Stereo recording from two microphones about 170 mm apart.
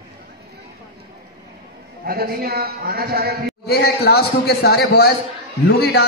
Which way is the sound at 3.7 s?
70° left (ahead or behind).